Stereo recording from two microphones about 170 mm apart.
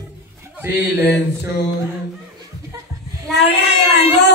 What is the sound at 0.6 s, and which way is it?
Speech, 10° right (ahead or behind).